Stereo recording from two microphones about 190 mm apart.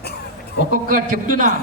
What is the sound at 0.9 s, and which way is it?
Speech, 45° right (ahead or behind).